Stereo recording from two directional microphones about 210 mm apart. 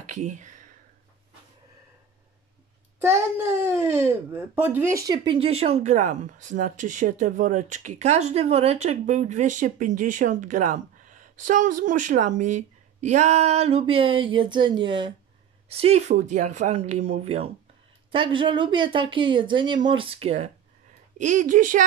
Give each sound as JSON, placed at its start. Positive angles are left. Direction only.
{"t": 0.1, "sound": "speech", "side_deg": -35}
{"t": 3.4, "sound": "speech", "side_deg": -10}